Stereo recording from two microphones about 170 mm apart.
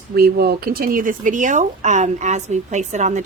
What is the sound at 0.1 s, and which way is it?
Speech, 65° right (ahead or behind).